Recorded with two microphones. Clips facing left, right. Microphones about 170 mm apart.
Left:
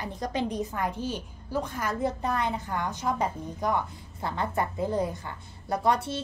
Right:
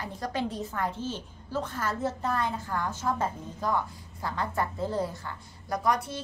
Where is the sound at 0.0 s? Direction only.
20° left (ahead or behind).